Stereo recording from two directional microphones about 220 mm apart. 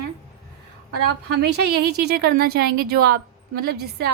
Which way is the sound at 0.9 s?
50° right (ahead or behind).